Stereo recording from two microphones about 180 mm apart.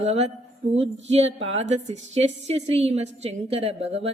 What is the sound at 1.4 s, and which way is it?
A woman's voice, 40° right (ahead or behind).